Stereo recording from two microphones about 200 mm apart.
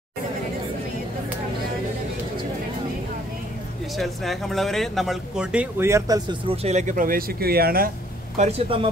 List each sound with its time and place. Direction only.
3.9 s speech: centre (ahead or behind); by 6.3 s 20° right (ahead or behind)
6.5 s speech: 35° right (ahead or behind); by 7.9 s 50° right (ahead or behind)
8.4 s speech: 30° right (ahead or behind)